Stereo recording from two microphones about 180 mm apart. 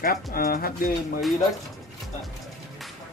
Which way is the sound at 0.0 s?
55° left (ahead or behind).